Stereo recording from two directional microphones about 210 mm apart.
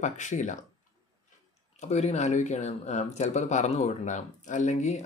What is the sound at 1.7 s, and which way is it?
Speech, 30° left (ahead or behind).